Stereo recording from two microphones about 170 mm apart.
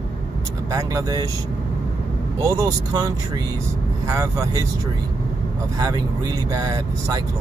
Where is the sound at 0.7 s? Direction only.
20° right (ahead or behind).